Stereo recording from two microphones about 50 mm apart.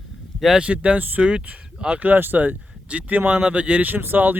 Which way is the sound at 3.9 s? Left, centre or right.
Right.